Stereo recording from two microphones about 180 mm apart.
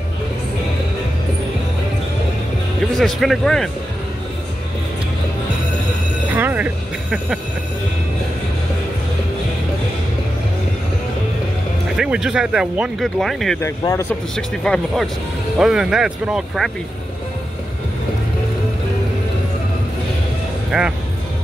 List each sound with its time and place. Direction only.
2.9 s speech: centre (ahead or behind)
6.3 s a sound: 10° right (ahead or behind)
12.0 s speech: 5° right (ahead or behind)
13.6 s speech: 15° left (ahead or behind)
14.3 s speech: 5° left (ahead or behind)
20.7 s speech: 5° right (ahead or behind)